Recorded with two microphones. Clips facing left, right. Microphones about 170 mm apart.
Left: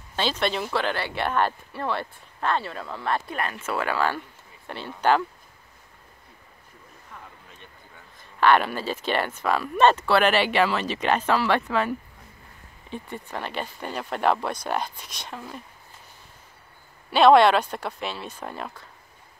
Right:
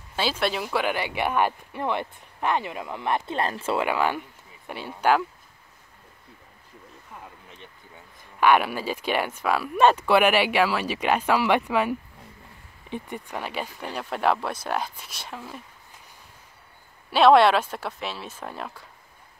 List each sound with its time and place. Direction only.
0.1 s speech: 5° right (ahead or behind)
3.3 s speech: 30° right (ahead or behind)
3.7 s speech: 15° right (ahead or behind)
7.9 s speech: 10° right (ahead or behind)
17.1 s speech: centre (ahead or behind)